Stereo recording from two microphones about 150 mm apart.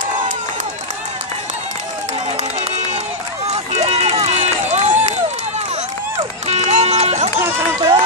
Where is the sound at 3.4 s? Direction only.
45° right (ahead or behind).